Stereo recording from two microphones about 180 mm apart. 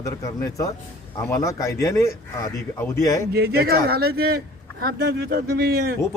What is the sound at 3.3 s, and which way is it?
A man's voice, 60° right (ahead or behind).